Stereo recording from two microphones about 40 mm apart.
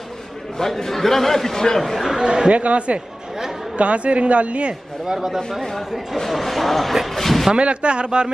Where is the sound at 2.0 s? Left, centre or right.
Right.